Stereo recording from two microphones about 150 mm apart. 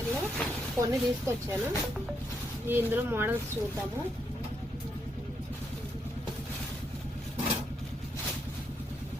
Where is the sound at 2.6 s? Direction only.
15° right (ahead or behind).